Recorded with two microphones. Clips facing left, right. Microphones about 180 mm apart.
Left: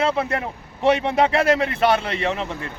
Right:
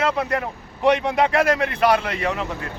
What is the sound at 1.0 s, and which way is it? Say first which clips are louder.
Speech: left 1 dB; 30° left (ahead or behind).